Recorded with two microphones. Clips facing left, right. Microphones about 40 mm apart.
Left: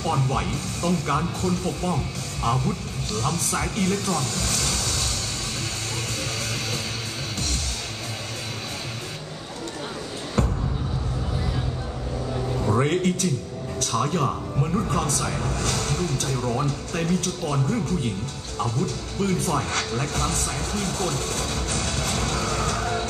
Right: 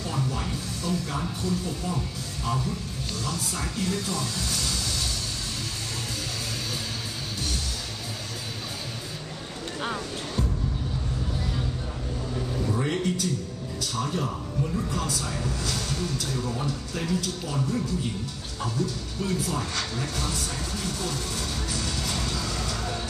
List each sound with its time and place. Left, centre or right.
0.0 s speech: left
12.6 s speech: left
14.6 s speech: left